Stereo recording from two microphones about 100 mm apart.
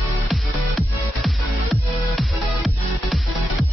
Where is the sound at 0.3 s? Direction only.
Centre (ahead or behind).